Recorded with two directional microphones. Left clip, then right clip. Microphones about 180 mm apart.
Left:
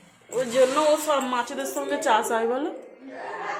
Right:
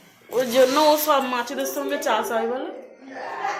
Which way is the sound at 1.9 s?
15° left (ahead or behind).